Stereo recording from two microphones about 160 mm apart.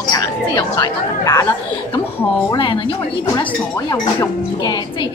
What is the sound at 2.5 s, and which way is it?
Speech, 30° left (ahead or behind).